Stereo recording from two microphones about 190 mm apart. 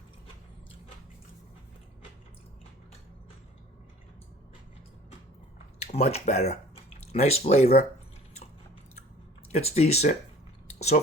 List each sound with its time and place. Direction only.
5.9 s speech: 35° left (ahead or behind)
9.5 s speech: 35° left (ahead or behind)